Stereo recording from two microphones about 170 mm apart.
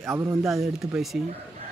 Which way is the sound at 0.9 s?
Centre (ahead or behind).